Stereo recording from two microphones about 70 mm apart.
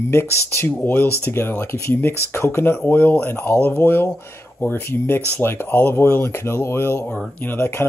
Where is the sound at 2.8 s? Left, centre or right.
Left.